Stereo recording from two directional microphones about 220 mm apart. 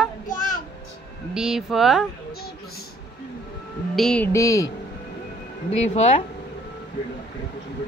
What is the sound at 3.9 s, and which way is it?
Speech, 5° left (ahead or behind).